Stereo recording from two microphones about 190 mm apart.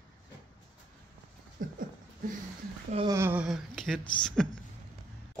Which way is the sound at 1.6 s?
50° right (ahead or behind).